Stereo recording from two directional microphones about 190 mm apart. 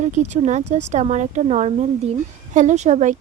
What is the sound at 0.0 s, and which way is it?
Speech, 35° right (ahead or behind).